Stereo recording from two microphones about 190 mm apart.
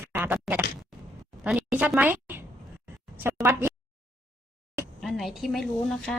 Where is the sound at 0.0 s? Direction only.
10° right (ahead or behind).